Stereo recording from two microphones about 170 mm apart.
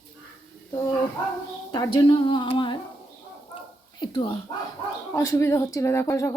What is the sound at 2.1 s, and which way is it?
Speech, 30° left (ahead or behind).